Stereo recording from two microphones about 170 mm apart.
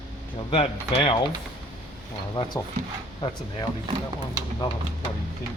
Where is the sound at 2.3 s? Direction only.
25° left (ahead or behind).